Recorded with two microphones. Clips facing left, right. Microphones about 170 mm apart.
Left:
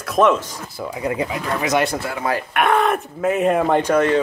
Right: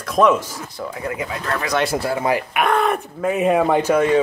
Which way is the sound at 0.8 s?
15° left (ahead or behind).